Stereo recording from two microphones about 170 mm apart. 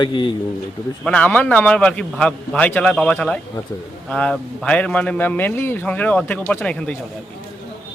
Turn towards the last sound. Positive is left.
turn(degrees=5)  # may be behind; listen again after turning